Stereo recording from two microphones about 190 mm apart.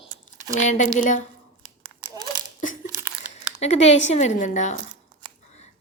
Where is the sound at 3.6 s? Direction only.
35° left (ahead or behind).